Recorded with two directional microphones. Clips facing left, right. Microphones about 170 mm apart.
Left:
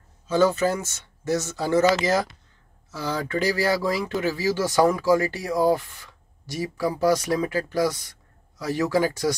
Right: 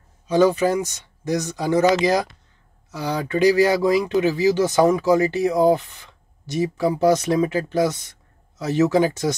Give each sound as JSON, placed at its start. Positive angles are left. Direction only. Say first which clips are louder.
{"t": 0.3, "sound": "speech", "louder": "right 3 dB", "side_deg": -15}